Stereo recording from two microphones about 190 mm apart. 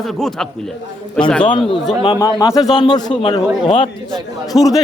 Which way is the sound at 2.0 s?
20° left (ahead or behind).